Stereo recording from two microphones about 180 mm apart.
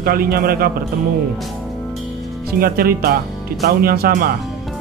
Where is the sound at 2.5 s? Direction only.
55° right (ahead or behind).